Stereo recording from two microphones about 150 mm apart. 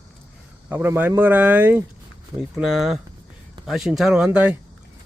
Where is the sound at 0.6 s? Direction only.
15° right (ahead or behind).